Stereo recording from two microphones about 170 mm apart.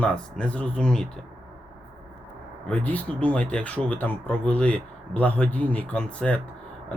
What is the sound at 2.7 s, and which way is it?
Speech, 10° left (ahead or behind).